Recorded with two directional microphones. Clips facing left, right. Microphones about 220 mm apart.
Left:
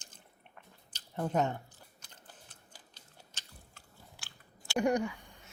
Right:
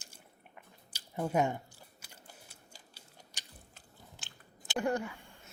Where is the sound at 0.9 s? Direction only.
10° right (ahead or behind).